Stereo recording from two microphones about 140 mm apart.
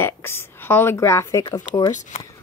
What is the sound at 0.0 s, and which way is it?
A woman's voice, 15° left (ahead or behind).